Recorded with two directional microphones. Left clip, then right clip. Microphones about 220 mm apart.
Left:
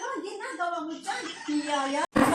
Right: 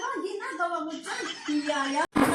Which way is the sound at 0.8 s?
35° right (ahead or behind).